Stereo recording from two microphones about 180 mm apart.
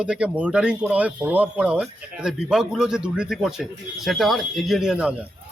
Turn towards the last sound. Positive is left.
turn(degrees=-5)  # may be behind; listen again after turning